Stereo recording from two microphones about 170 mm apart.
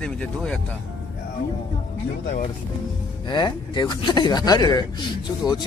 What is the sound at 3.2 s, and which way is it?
Speech, 25° left (ahead or behind).